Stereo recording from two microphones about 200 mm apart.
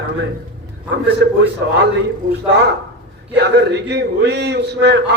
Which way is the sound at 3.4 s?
60° right (ahead or behind).